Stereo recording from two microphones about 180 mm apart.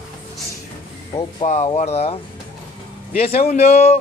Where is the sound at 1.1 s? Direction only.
35° left (ahead or behind).